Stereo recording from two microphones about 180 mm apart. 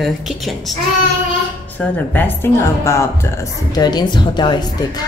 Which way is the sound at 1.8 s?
10° left (ahead or behind).